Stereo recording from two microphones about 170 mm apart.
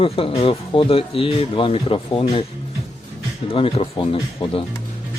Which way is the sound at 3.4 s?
35° left (ahead or behind).